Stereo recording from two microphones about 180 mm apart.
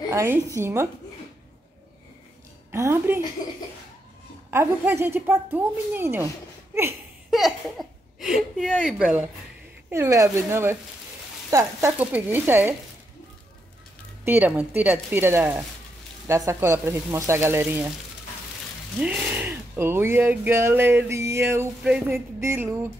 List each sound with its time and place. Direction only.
0.1 s speech: 15° right (ahead or behind)
2.7 s speech: 15° right (ahead or behind)
4.5 s speech: 15° right (ahead or behind)
7.2 s a sound: centre (ahead or behind)
8.5 s speech: centre (ahead or behind)
9.8 s speech: 15° right (ahead or behind)
14.2 s speech: 10° right (ahead or behind)
18.9 s speech: 10° right (ahead or behind)